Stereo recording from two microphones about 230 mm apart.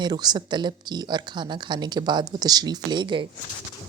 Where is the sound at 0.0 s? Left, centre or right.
Centre.